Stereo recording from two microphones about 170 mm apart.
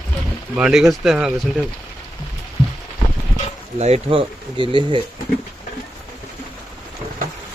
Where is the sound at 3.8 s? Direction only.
40° right (ahead or behind).